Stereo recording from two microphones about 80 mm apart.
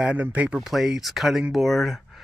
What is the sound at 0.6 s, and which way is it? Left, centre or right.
Speech, centre.